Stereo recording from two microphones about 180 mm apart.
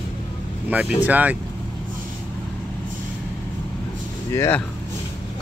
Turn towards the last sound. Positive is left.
turn(degrees=15)  # may be behind; listen again after turning